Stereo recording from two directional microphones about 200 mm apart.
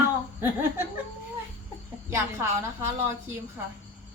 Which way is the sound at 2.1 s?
15° right (ahead or behind).